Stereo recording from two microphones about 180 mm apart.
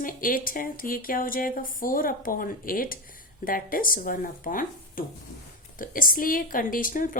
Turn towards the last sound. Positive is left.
turn(degrees=50)  # may be behind; listen again after turning